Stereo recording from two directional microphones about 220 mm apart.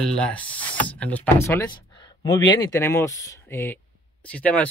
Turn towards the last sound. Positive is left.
turn(degrees=5)  # may be behind; listen again after turning